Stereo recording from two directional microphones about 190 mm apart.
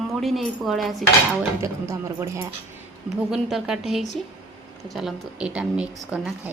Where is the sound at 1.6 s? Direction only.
15° right (ahead or behind).